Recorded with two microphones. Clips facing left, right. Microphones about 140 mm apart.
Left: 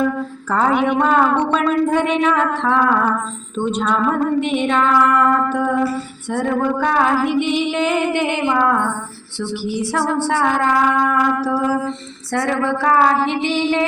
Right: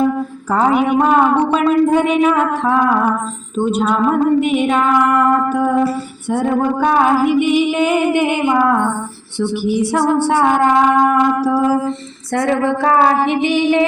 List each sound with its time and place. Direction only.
0.5 s female singing: 10° right (ahead or behind)